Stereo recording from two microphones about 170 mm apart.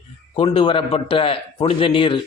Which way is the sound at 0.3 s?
30° left (ahead or behind).